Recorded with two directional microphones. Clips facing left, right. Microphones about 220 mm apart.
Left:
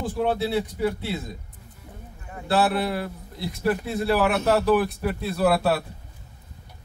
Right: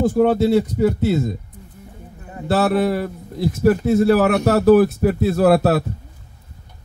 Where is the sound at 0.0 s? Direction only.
45° right (ahead or behind).